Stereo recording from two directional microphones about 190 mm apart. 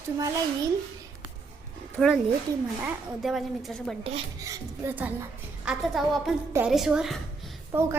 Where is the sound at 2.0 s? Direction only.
Centre (ahead or behind).